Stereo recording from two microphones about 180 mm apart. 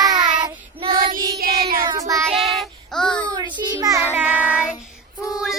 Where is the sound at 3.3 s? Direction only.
25° right (ahead or behind).